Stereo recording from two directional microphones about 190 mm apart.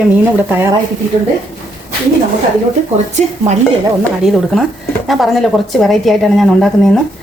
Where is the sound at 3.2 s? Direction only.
40° right (ahead or behind).